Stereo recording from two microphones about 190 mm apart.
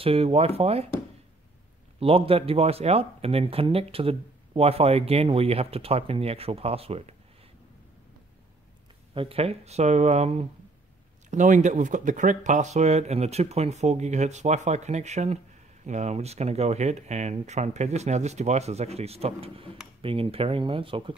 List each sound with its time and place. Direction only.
0.0 s speech: 30° right (ahead or behind)
2.0 s speech: 30° right (ahead or behind)
9.1 s speech: 30° right (ahead or behind)